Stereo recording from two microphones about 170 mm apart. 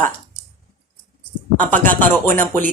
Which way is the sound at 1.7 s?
10° left (ahead or behind).